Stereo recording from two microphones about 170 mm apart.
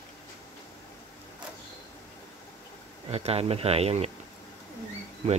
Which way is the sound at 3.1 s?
35° right (ahead or behind).